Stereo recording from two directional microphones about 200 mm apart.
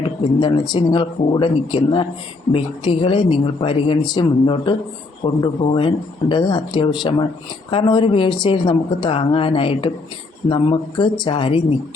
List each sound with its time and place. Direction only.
0.3 s speech: 20° left (ahead or behind)